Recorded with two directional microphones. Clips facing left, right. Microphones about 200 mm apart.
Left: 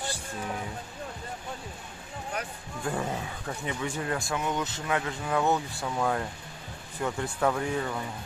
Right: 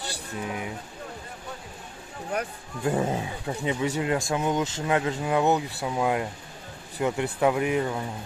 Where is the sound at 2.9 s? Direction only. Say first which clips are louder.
Right 6 dB; 25° right (ahead or behind).